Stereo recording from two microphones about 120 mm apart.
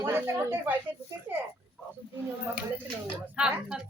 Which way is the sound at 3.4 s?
5° right (ahead or behind).